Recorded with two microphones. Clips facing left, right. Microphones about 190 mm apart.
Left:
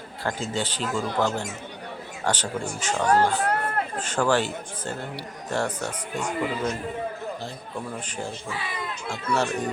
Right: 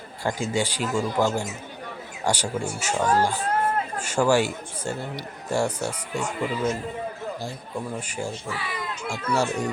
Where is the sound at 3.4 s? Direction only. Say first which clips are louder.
Right 2 dB; 65° left (ahead or behind).